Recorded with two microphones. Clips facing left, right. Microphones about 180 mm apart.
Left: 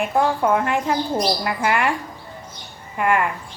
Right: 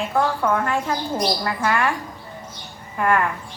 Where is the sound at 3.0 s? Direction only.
15° left (ahead or behind).